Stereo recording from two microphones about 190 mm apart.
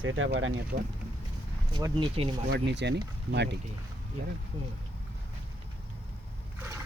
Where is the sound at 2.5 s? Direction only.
60° right (ahead or behind).